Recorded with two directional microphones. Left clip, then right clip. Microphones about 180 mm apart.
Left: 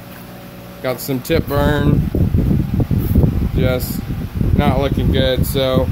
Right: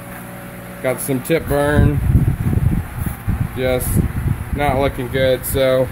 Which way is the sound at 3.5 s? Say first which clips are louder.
Right 3 dB; centre (ahead or behind).